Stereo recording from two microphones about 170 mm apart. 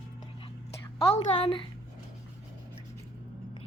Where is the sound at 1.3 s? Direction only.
30° left (ahead or behind).